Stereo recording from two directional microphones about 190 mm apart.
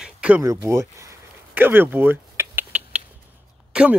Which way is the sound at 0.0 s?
5° right (ahead or behind).